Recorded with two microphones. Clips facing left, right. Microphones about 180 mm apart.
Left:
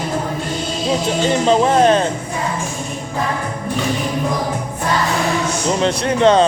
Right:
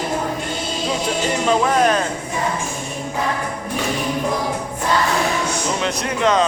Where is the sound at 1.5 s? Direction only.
30° left (ahead or behind).